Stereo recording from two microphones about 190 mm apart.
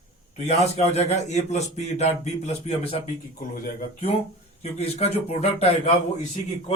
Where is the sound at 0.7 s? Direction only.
35° left (ahead or behind).